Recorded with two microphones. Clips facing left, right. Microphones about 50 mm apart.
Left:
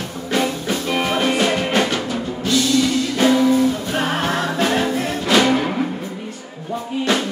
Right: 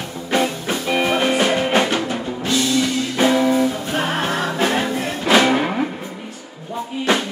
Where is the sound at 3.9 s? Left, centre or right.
Centre.